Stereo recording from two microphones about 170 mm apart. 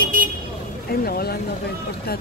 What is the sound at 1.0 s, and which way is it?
Speech, 65° left (ahead or behind).